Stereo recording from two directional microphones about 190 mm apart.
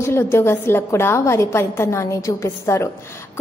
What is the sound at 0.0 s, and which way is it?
A woman's voice, 15° left (ahead or behind).